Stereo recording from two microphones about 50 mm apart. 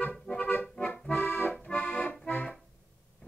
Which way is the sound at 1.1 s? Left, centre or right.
Left.